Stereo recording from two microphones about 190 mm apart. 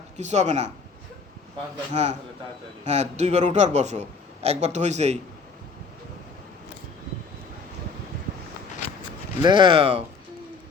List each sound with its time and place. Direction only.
0.2 s a man's voice: 35° right (ahead or behind)
1.9 s a man's voice: 35° right (ahead or behind)
9.4 s speech: 25° right (ahead or behind)